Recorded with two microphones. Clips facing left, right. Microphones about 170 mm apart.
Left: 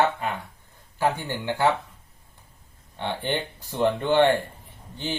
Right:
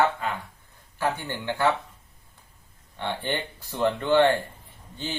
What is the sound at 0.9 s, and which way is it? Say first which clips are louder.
Speech: left 3 dB; 15° left (ahead or behind).